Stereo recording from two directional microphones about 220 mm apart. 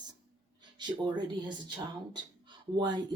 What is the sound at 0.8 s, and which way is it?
Speech, 20° right (ahead or behind).